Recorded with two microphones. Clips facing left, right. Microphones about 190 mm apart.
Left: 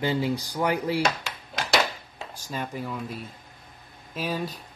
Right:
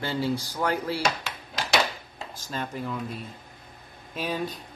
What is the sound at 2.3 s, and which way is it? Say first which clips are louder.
Speech: even; 10° left (ahead or behind).